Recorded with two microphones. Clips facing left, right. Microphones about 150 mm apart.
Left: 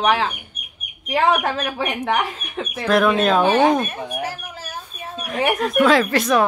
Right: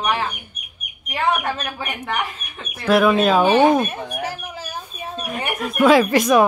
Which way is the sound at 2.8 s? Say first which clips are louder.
Right 2 dB; 5° right (ahead or behind).